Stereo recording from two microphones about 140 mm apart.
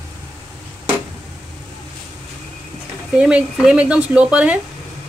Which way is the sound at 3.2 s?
10° right (ahead or behind).